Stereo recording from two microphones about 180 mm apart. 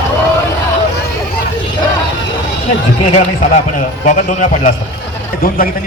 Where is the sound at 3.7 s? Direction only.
45° left (ahead or behind).